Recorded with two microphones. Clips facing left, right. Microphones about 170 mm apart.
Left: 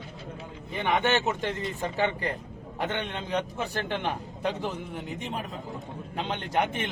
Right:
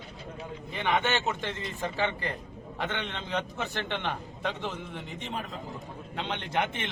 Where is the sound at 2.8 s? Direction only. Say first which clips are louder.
Left 3 dB; 15° left (ahead or behind).